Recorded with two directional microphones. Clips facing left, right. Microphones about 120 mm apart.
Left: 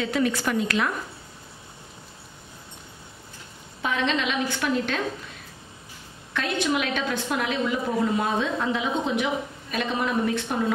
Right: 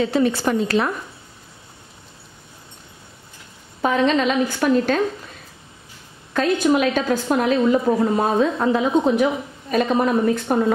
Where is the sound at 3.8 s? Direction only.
40° right (ahead or behind).